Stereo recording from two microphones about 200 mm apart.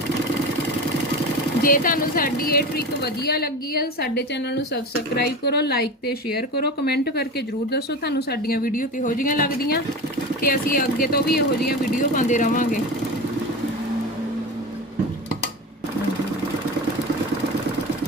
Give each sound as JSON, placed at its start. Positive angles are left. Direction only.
{"t": 1.6, "sound": "speech", "side_deg": 45}